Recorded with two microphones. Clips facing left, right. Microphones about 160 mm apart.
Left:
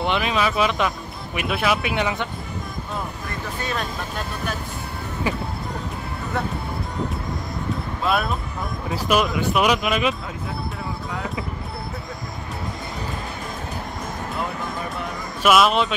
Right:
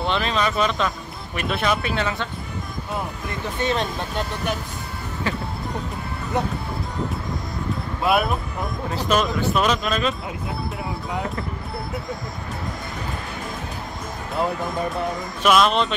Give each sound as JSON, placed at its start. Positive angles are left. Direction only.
{"t": 0.0, "sound": "speech", "side_deg": 10}
{"t": 3.6, "sound": "speech", "side_deg": -20}
{"t": 5.2, "sound": "speech", "side_deg": 15}
{"t": 6.4, "sound": "speech", "side_deg": -15}
{"t": 8.0, "sound": "speech", "side_deg": -10}
{"t": 8.9, "sound": "speech", "side_deg": 10}
{"t": 15.4, "sound": "a man's voice", "side_deg": 5}